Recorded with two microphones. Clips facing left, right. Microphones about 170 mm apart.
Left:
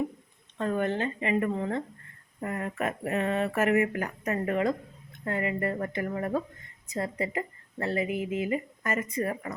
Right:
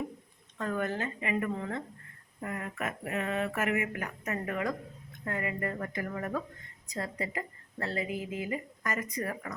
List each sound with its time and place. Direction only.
0.6 s speech: 25° left (ahead or behind)